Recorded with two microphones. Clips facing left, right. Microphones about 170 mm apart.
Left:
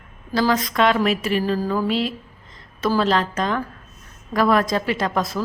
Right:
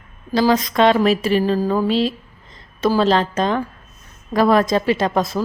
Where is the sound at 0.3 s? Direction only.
20° right (ahead or behind).